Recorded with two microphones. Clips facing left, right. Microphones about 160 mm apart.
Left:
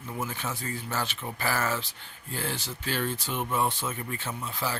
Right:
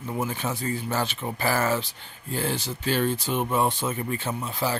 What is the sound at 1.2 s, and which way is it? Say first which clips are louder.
Speech: right 4 dB; 30° right (ahead or behind).